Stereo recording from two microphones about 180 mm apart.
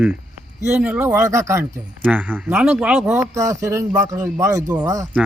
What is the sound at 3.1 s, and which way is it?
Speech, 15° right (ahead or behind).